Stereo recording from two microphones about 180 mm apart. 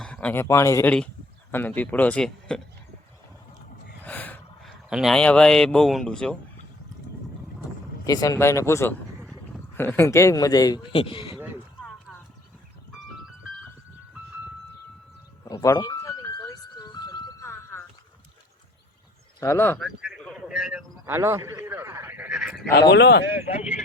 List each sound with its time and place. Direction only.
0.0 s speech: 5° left (ahead or behind)
4.0 s gasp: 10° left (ahead or behind)
4.9 s speech: centre (ahead or behind)
8.0 s speech: 20° left (ahead or behind)
11.0 s speech: 30° left (ahead or behind)
15.4 s music: 15° left (ahead or behind)
19.4 s speech: 15° left (ahead or behind)
20.0 s a sound: centre (ahead or behind)
21.1 s a sound: 15° right (ahead or behind)
22.7 s speech: 75° left (ahead or behind)